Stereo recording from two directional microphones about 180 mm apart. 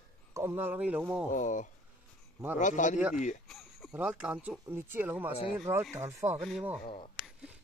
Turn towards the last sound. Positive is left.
turn(degrees=30)  # may be behind; listen again after turning